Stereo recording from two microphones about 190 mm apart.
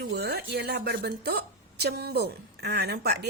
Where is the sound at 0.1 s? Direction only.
60° right (ahead or behind).